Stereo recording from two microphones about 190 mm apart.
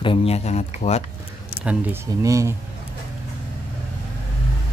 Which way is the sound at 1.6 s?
10° right (ahead or behind).